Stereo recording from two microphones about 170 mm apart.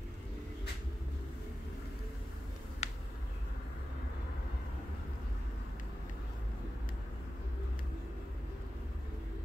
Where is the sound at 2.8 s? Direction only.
40° left (ahead or behind).